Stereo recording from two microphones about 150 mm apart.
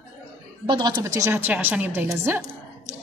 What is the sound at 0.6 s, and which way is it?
A woman's voice, 30° right (ahead or behind).